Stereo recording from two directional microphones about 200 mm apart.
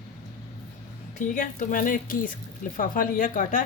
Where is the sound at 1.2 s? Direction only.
40° left (ahead or behind).